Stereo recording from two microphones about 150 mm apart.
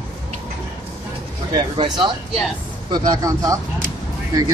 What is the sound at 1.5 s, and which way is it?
Speech, 30° right (ahead or behind).